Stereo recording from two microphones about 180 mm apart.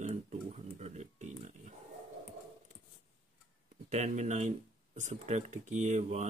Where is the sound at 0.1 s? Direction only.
40° right (ahead or behind).